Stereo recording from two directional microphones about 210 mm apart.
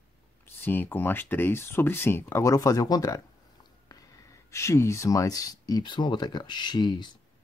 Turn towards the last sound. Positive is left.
turn(degrees=20)  # may be behind; listen again after turning